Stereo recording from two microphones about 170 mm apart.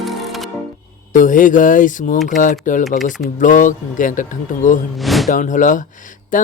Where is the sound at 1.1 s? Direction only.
50° left (ahead or behind).